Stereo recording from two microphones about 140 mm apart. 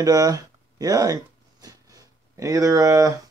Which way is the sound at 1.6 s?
25° right (ahead or behind).